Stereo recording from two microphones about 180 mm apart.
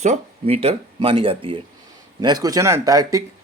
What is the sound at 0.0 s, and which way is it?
Speech, 40° right (ahead or behind).